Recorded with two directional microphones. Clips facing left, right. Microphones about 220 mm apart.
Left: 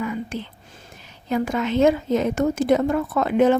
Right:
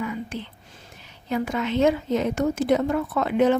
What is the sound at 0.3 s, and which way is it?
Speech, 45° left (ahead or behind).